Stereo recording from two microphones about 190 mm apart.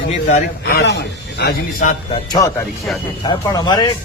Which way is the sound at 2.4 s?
20° left (ahead or behind).